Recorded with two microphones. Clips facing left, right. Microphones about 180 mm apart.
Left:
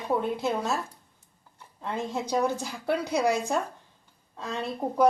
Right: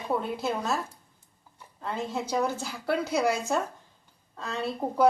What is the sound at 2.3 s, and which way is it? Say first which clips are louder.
A woman's voice: left 3 dB; 15° left (ahead or behind).